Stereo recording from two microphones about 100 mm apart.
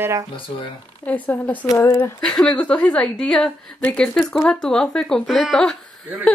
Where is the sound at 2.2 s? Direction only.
10° left (ahead or behind).